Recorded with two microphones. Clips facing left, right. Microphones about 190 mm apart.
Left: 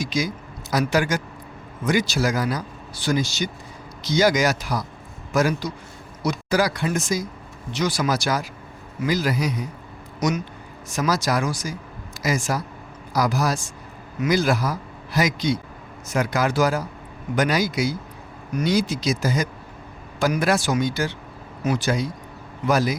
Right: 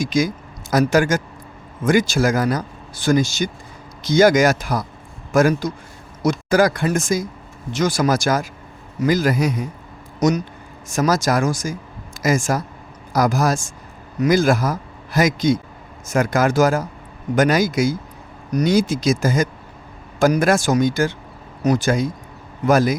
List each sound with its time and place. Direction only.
0.0 s a man's voice: 50° right (ahead or behind)